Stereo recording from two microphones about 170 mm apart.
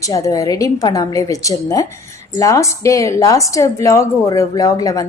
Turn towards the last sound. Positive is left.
turn(degrees=20)  # may be behind; listen again after turning